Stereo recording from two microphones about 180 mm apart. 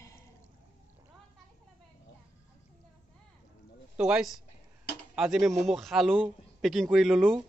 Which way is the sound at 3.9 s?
5° right (ahead or behind).